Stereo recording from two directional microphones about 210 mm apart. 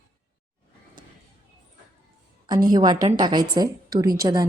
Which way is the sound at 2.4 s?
20° right (ahead or behind).